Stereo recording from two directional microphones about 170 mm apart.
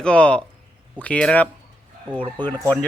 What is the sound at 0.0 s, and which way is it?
Speech, 5° left (ahead or behind).